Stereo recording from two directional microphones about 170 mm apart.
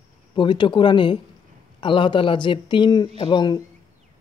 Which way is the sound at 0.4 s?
30° left (ahead or behind).